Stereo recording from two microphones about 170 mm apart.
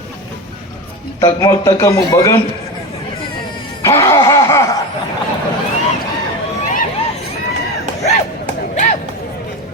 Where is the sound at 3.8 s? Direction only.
15° left (ahead or behind).